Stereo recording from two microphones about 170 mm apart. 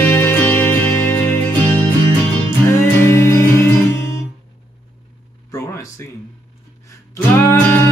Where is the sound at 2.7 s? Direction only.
15° left (ahead or behind).